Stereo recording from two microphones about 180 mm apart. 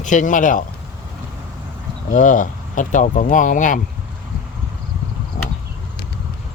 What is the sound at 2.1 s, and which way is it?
Speech, 45° left (ahead or behind).